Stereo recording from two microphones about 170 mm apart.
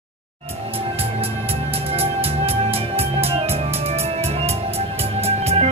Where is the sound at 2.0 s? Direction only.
35° right (ahead or behind).